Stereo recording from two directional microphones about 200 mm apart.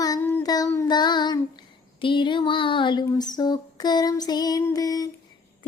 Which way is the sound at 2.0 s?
25° left (ahead or behind).